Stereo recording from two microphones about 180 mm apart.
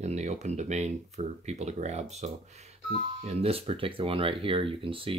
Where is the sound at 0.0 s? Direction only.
40° right (ahead or behind).